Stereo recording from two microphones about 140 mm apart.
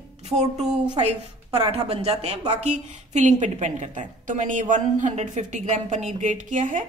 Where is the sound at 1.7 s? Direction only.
45° right (ahead or behind).